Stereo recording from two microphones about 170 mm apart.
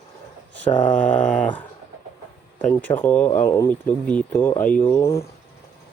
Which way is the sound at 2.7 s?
10° left (ahead or behind).